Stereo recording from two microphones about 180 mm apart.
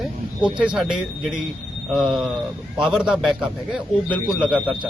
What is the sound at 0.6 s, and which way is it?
A man's voice, 5° right (ahead or behind).